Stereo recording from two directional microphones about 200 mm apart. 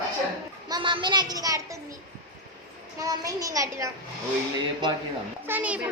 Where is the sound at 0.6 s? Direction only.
20° right (ahead or behind).